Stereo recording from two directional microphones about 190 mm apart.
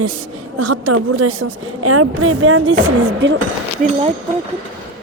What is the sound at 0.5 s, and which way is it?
Speech, 90° right.